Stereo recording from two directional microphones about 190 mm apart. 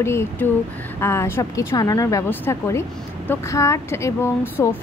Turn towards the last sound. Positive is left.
turn(degrees=10)  # may be behind; listen again after turning